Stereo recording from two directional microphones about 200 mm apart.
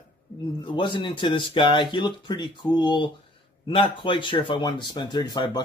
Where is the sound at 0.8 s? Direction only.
25° left (ahead or behind).